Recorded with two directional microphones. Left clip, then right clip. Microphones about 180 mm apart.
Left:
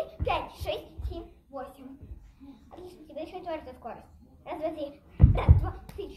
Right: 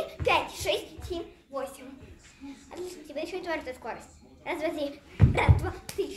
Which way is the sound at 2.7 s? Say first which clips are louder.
Right 5 dB; 20° right (ahead or behind).